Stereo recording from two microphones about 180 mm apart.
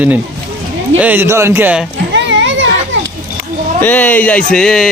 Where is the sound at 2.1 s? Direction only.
90° right.